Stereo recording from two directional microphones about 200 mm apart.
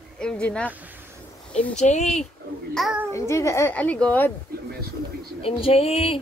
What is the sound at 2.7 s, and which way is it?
Child singing, centre (ahead or behind).